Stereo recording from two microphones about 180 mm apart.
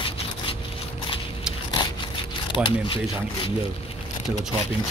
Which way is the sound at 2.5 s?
30° left (ahead or behind).